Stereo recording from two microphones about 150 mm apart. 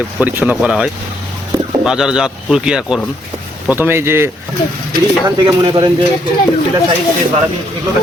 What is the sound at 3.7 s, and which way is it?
Speech, 15° right (ahead or behind).